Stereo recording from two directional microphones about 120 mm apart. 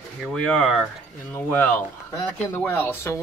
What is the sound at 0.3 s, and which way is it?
Speech, 5° left (ahead or behind).